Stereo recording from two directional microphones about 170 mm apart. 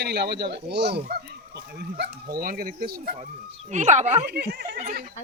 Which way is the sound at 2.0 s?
60° right (ahead or behind).